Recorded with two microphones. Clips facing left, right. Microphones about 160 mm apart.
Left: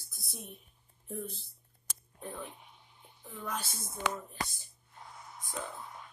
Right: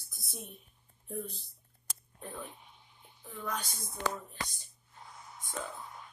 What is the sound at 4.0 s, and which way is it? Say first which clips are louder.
Speech: even; 70° right (ahead or behind).